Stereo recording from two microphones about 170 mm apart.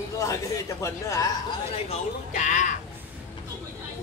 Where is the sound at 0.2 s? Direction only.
20° left (ahead or behind).